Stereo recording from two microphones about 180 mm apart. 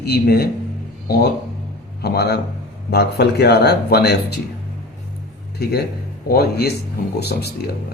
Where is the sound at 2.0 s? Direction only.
65° left (ahead or behind).